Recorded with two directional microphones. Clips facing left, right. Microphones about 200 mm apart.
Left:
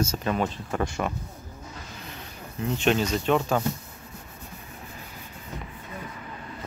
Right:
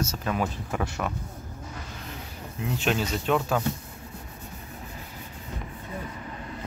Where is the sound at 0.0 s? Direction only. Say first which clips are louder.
Left 2 dB; centre (ahead or behind).